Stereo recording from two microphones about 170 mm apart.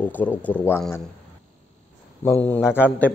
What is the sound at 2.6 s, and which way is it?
Speech, 10° right (ahead or behind).